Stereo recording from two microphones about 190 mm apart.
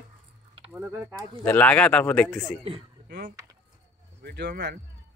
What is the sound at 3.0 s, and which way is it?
Speech, 55° right (ahead or behind).